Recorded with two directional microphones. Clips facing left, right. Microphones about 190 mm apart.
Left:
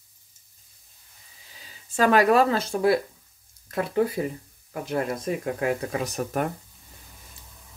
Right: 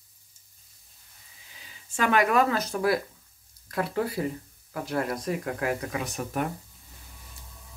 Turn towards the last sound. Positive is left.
turn(degrees=40)  # may be behind; listen again after turning